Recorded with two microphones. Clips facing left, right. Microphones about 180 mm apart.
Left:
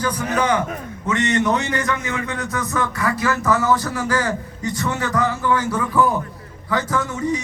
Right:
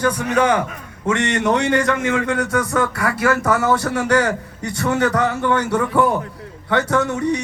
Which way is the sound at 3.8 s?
70° right (ahead or behind).